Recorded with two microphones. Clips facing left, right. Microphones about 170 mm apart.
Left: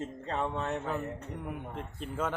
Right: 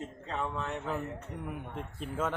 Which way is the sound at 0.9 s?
Centre (ahead or behind).